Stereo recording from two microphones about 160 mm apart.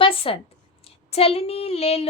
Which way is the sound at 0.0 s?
35° left (ahead or behind).